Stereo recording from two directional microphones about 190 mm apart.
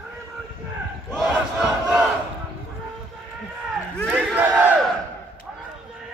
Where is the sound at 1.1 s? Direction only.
Centre (ahead or behind).